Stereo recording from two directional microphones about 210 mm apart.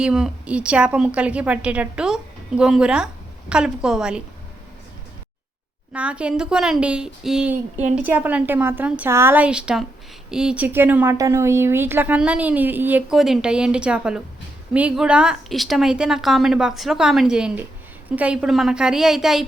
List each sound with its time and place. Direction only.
0.0 s a woman's voice: 5° right (ahead or behind)
5.9 s a woman's voice: 5° right (ahead or behind)